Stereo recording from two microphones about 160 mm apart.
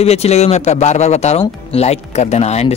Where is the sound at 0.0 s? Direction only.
40° left (ahead or behind).